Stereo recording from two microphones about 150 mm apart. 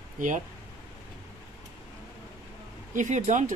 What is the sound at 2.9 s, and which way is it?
Speech, 55° right (ahead or behind).